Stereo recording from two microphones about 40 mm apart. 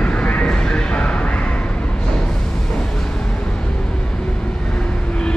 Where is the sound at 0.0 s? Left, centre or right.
Left.